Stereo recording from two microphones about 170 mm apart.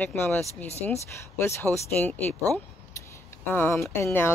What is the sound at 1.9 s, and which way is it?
Speech, 10° left (ahead or behind).